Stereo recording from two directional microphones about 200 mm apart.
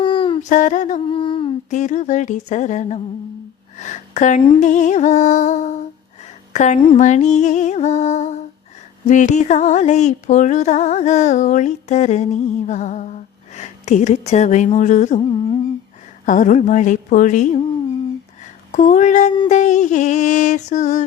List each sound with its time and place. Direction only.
0.0 s a sound: 25° left (ahead or behind)
0.4 s music: 40° left (ahead or behind)
1.0 s humming: 25° left (ahead or behind)
1.7 s music: 35° left (ahead or behind)
6.5 s a woman's voice: 35° left (ahead or behind)
6.7 s mantra: 25° left (ahead or behind)
7.0 s music: 35° left (ahead or behind)
16.2 s music: 40° left (ahead or behind)
18.7 s music: 40° left (ahead or behind)